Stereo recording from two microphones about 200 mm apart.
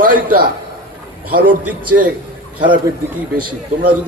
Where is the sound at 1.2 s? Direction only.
45° right (ahead or behind).